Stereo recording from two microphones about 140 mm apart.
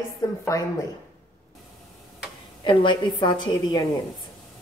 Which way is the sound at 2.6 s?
35° left (ahead or behind).